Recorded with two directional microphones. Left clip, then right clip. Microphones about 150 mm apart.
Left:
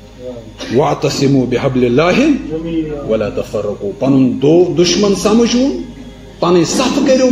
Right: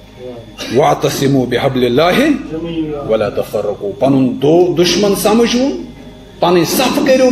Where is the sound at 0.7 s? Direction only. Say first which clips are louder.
Right 2 dB; 35° left (ahead or behind).